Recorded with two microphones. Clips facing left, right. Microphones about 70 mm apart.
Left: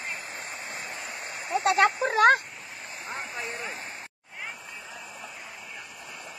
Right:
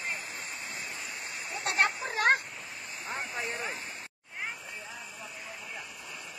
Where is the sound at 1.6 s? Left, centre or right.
Left.